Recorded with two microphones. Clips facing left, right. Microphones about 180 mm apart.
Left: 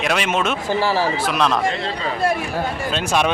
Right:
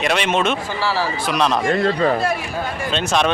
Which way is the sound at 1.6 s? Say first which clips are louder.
Right 6 dB; 50° right (ahead or behind).